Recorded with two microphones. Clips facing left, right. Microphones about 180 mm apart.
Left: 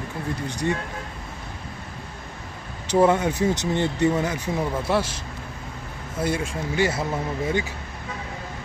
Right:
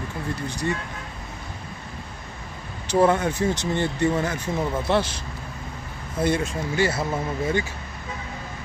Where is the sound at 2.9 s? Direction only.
15° left (ahead or behind).